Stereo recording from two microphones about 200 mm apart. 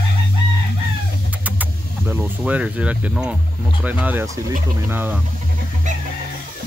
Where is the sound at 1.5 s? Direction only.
10° right (ahead or behind).